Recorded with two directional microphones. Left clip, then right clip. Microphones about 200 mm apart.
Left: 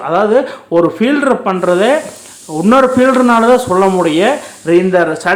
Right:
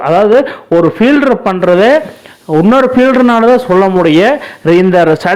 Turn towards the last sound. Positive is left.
turn(degrees=-40)  # may be behind; listen again after turning